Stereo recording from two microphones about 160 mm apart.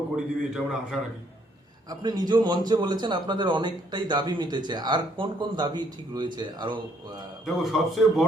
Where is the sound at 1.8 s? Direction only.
25° right (ahead or behind).